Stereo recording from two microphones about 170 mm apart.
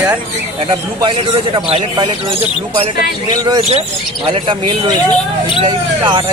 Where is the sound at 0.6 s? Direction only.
30° right (ahead or behind).